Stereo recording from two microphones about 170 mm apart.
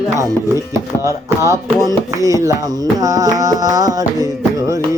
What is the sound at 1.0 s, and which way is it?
Speech, 15° right (ahead or behind).